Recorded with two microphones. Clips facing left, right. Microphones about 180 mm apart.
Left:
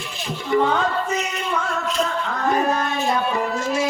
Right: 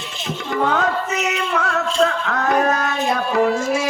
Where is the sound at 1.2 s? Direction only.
80° right.